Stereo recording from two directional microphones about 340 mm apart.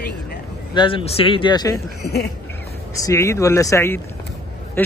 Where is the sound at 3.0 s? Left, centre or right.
Centre.